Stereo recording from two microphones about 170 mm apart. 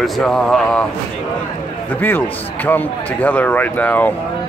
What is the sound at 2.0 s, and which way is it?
A man's voice, 10° left (ahead or behind).